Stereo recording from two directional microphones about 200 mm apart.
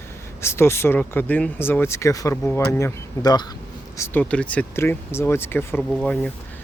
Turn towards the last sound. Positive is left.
turn(degrees=5)  # may be behind; listen again after turning